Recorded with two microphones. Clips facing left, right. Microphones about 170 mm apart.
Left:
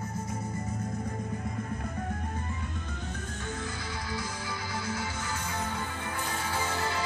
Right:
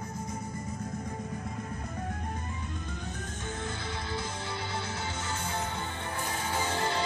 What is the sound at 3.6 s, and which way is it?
Music, 25° right (ahead or behind).